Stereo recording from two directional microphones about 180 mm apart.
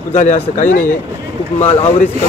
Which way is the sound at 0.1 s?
45° left (ahead or behind).